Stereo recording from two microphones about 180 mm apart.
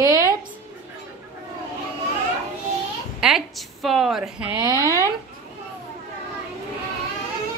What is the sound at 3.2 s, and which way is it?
A woman's voice, centre (ahead or behind).